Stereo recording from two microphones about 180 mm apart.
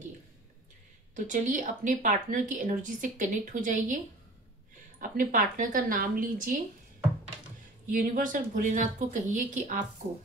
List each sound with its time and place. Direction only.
1.1 s speech: 45° right (ahead or behind)
5.0 s speech: 45° right (ahead or behind)
7.9 s speech: 45° right (ahead or behind)